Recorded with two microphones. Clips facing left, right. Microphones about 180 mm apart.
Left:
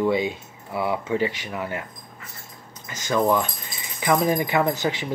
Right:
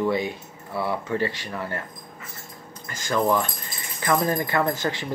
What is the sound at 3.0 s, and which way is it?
Speech, 15° left (ahead or behind).